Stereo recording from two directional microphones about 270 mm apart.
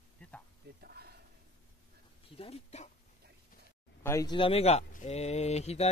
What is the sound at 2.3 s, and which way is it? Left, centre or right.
Speech, left.